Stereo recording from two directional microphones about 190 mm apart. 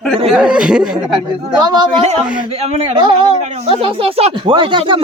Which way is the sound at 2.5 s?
35° right (ahead or behind).